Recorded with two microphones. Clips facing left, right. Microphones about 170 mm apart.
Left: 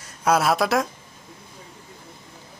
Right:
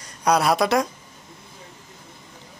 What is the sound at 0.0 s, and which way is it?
Speech, 5° left (ahead or behind).